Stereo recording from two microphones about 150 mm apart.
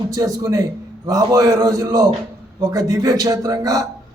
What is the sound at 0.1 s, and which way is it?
A man's voice, 25° right (ahead or behind).